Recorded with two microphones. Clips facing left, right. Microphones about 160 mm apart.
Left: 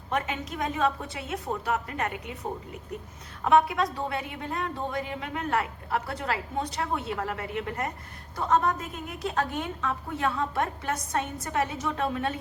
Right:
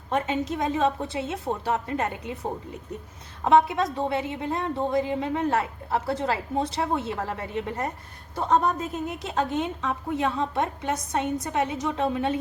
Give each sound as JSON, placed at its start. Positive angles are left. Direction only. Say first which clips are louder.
{"t": 0.1, "sound": "a woman's voice", "louder": "right 5 dB", "side_deg": -25}